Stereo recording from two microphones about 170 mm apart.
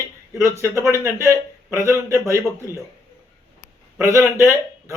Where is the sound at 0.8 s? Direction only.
15° right (ahead or behind).